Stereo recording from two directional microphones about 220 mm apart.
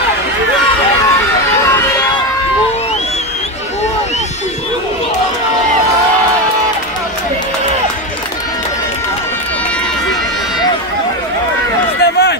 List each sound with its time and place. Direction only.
12.0 s run: 50° left (ahead or behind)